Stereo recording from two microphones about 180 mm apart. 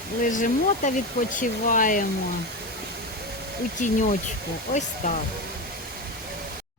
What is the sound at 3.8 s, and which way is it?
Speech, 45° left (ahead or behind).